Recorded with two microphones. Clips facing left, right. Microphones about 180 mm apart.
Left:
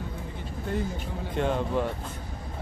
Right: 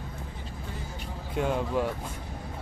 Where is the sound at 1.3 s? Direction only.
5° right (ahead or behind).